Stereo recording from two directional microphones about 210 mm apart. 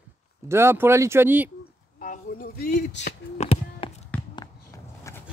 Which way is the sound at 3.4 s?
30° left (ahead or behind).